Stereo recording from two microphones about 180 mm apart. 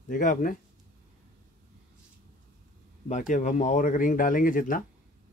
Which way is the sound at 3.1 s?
45° left (ahead or behind).